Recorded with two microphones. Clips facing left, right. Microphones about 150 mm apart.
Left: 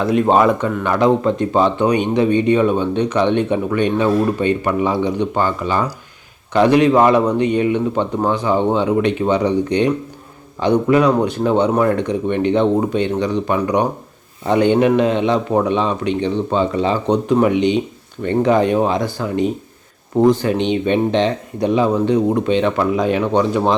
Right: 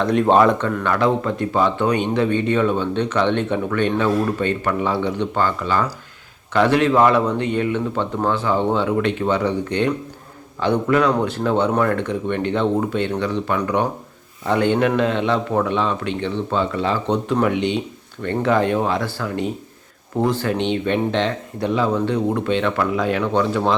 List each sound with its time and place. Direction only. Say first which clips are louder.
0.0 s speech: left 1 dB; 5° left (ahead or behind); by 23.7 s 20° left (ahead or behind)